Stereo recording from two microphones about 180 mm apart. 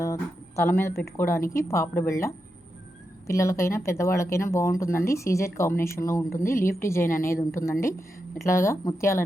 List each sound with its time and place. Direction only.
0.0 s speech: 15° left (ahead or behind)